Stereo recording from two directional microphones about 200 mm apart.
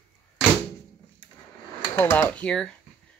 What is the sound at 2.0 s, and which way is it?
Speech, 10° left (ahead or behind).